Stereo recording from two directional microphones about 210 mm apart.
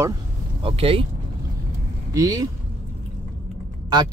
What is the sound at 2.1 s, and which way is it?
Speech, 15° right (ahead or behind).